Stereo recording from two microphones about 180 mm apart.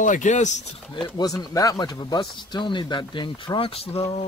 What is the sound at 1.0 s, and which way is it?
Speech, 20° left (ahead or behind).